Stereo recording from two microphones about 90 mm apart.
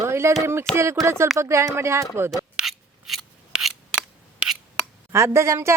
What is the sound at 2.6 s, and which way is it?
Scissors, 5° right (ahead or behind).